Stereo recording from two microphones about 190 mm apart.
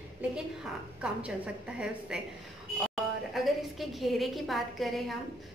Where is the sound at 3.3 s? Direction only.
Centre (ahead or behind).